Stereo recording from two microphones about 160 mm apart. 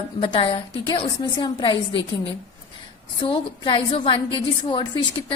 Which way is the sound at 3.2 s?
30° left (ahead or behind).